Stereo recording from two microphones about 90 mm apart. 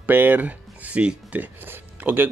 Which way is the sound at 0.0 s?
20° right (ahead or behind).